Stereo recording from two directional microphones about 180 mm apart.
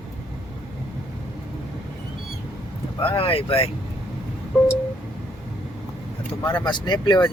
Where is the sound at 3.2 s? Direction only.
30° left (ahead or behind).